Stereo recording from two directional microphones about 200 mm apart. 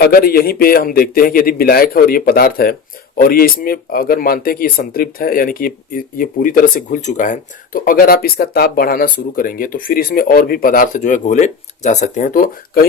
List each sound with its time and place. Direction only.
0.0 s speech: 50° left (ahead or behind)